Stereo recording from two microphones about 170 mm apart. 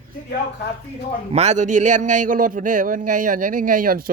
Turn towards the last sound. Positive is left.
turn(degrees=-55)  # may be behind; listen again after turning